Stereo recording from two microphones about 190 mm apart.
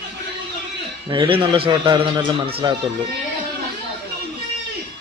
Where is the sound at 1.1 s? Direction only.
25° right (ahead or behind).